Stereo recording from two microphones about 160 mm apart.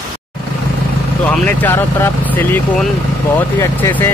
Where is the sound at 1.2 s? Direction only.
10° left (ahead or behind).